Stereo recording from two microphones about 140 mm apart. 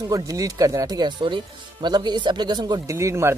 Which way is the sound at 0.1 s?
25° right (ahead or behind).